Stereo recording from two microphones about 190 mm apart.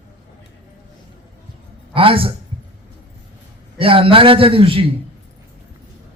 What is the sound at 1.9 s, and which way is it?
Speech, 30° right (ahead or behind).